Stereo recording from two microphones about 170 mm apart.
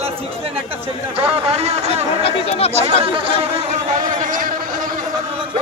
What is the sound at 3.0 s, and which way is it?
Speech, 30° right (ahead or behind).